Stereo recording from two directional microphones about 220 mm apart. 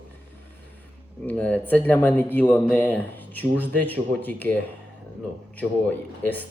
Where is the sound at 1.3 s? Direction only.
5° left (ahead or behind).